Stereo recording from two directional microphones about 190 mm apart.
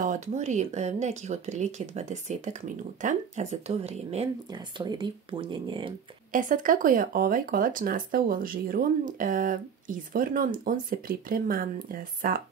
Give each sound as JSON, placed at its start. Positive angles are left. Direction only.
{"t": 0.0, "sound": "speech", "side_deg": -40}
{"t": 4.5, "sound": "speech", "side_deg": -25}
{"t": 6.3, "sound": "speech", "side_deg": -45}